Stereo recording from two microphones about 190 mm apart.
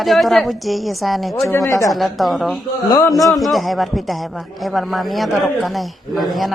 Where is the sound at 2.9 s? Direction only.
15° left (ahead or behind).